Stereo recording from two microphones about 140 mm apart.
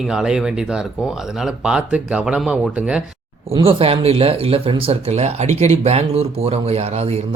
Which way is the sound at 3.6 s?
40° right (ahead or behind).